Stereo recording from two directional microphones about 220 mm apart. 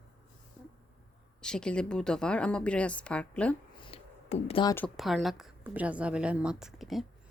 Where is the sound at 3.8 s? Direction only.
25° left (ahead or behind).